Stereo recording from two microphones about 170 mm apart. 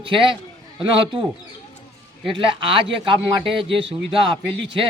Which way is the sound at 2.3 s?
30° right (ahead or behind).